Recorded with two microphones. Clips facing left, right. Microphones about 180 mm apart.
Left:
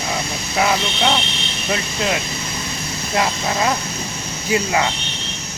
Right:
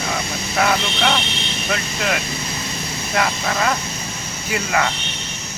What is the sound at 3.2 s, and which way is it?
Speech, 15° left (ahead or behind).